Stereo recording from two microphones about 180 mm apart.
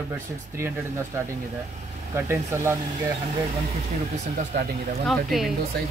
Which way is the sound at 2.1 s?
15° right (ahead or behind).